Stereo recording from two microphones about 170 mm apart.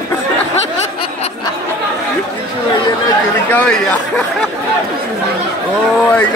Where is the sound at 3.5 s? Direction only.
10° left (ahead or behind).